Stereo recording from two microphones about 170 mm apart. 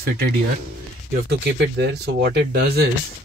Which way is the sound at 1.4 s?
85° right.